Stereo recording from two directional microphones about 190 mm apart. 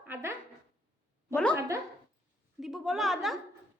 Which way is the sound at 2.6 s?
Centre (ahead or behind).